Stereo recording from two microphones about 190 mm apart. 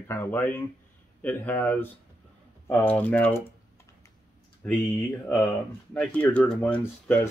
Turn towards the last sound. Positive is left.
turn(degrees=5)  # may be behind; listen again after turning